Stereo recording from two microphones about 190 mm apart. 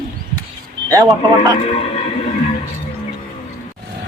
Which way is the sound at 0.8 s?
20° right (ahead or behind).